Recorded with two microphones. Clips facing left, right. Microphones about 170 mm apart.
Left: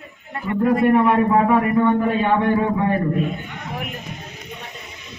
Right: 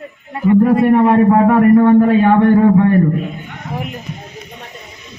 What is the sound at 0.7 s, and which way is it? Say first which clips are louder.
Speech: right 5 dB; 30° right (ahead or behind).